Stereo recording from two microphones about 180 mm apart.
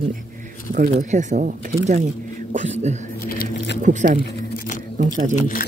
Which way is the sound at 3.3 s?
60° left (ahead or behind).